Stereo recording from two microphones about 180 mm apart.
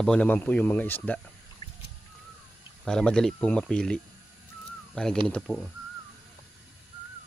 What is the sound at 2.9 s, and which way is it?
Speech, 5° left (ahead or behind).